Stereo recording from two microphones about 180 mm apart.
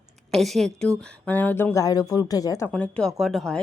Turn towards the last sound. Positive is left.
turn(degrees=0)  # may be behind; listen again after turning